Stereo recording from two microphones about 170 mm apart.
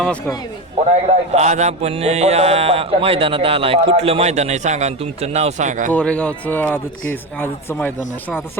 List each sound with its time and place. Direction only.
0.0 s a man's voice: 5° left (ahead or behind)
1.0 s speech: 40° right (ahead or behind)
5.9 s a man's voice: 5° left (ahead or behind)